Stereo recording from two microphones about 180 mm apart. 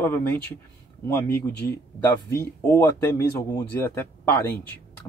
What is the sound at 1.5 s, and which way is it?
Speech, 70° left (ahead or behind).